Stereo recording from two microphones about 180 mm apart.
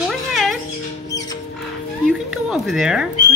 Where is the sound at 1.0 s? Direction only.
20° left (ahead or behind).